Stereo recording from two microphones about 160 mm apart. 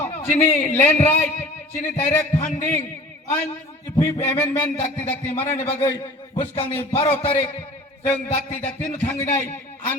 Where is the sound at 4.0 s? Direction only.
15° left (ahead or behind).